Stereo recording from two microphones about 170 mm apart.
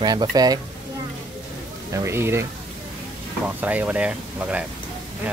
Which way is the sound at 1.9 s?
15° right (ahead or behind).